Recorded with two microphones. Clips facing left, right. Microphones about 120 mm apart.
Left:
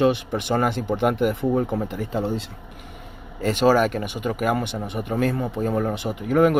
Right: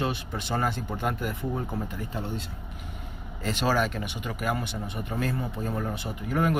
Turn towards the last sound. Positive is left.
turn(degrees=60)  # may be behind; listen again after turning